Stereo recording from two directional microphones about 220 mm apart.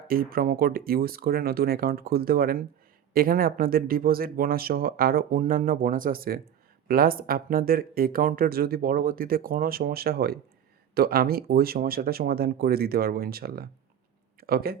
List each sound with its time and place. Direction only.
0.1 s speech: 40° right (ahead or behind)